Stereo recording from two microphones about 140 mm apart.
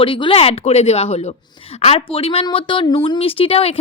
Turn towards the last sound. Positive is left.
turn(degrees=45)  # may be behind; listen again after turning